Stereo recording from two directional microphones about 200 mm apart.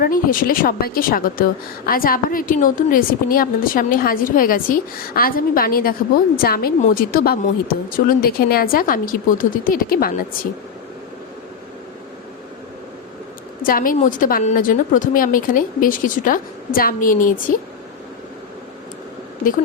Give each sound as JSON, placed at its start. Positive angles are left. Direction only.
{"t": 0.0, "sound": "a woman's voice", "side_deg": 45}
{"t": 13.6, "sound": "a woman's voice", "side_deg": 45}